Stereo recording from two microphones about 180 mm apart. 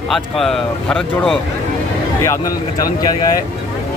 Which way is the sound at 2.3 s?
20° left (ahead or behind).